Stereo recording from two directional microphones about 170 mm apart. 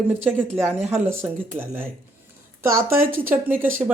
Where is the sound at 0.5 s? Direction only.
10° right (ahead or behind).